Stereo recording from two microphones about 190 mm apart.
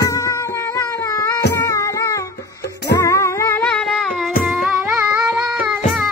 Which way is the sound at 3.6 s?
Centre (ahead or behind).